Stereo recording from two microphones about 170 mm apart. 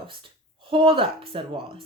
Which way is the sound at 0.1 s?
30° right (ahead or behind).